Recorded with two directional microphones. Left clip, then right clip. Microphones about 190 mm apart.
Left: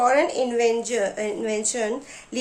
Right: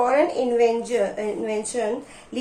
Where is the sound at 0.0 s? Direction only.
40° left (ahead or behind).